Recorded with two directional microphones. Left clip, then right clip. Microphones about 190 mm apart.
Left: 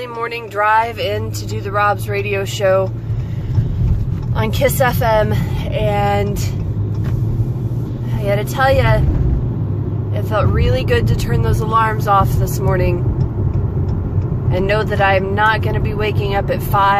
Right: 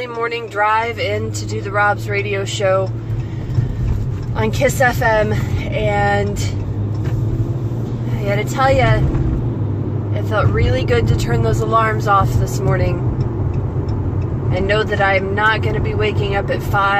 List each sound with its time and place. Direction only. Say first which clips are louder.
0.2 s speech: even; 10° left (ahead or behind)
4.4 s speech: even; 10° left (ahead or behind)
8.3 s speech: left 1 dB; 10° left (ahead or behind)
10.3 s speech: even; 15° left (ahead or behind)
14.5 s speech: even; 15° left (ahead or behind)